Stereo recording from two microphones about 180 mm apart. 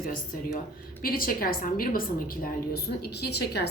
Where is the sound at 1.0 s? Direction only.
55° left (ahead or behind).